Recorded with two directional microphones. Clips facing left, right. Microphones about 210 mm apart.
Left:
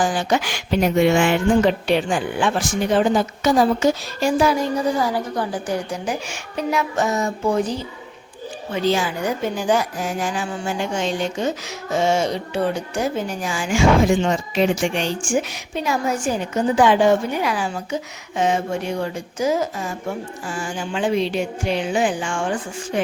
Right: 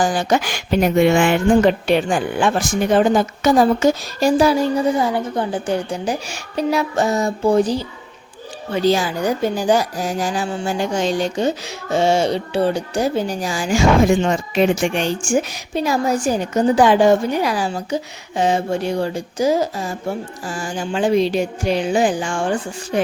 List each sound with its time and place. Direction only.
0.0 s a woman's voice: 40° right (ahead or behind)